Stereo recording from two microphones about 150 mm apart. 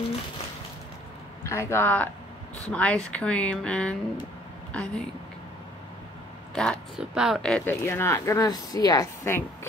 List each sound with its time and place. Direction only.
1.4 s speech: 20° left (ahead or behind)
6.5 s speech: 5° left (ahead or behind)
7.8 s a woman's voice: 15° left (ahead or behind)